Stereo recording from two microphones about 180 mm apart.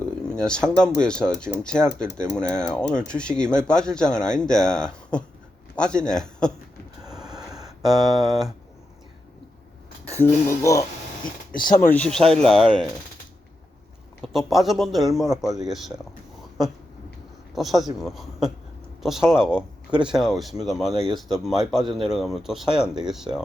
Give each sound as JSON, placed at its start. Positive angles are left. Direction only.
{"t": 0.0, "sound": "a man's voice", "side_deg": 5}
{"t": 7.3, "sound": "a sound", "side_deg": -20}
{"t": 7.9, "sound": "speech", "side_deg": 0}
{"t": 10.2, "sound": "speech", "side_deg": 15}
{"t": 14.3, "sound": "speech", "side_deg": 0}
{"t": 17.5, "sound": "speech", "side_deg": 0}